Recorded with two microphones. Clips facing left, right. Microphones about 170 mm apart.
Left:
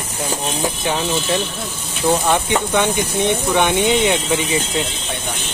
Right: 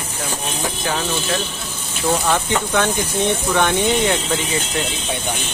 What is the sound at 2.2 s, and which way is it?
Speech, 15° left (ahead or behind).